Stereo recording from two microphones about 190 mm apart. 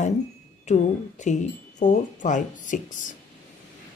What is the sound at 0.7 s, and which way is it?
A woman's voice, 40° left (ahead or behind).